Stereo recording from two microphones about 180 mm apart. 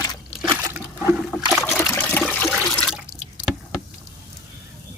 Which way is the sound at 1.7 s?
5° left (ahead or behind).